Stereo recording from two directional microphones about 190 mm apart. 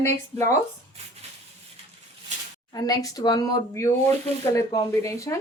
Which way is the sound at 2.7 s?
20° left (ahead or behind).